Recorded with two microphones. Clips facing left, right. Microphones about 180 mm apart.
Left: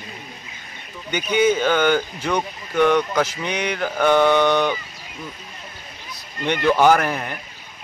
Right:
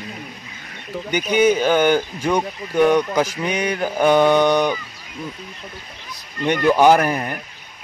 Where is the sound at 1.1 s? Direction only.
10° right (ahead or behind).